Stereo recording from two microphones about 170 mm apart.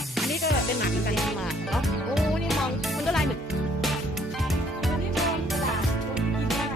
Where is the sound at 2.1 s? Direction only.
Centre (ahead or behind).